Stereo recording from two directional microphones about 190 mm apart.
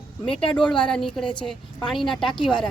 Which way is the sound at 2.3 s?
25° left (ahead or behind).